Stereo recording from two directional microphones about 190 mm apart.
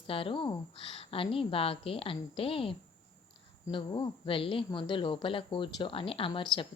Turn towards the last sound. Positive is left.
turn(degrees=25)  # may be behind; listen again after turning